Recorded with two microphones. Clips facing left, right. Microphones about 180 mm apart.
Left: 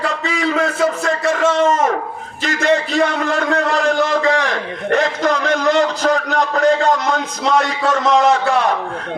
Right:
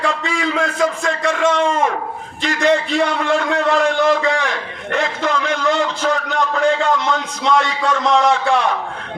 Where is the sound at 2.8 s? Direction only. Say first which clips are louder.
Even; 40° left (ahead or behind).